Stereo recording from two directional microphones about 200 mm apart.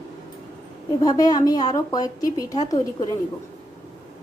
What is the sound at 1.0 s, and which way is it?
A woman's voice, 20° left (ahead or behind).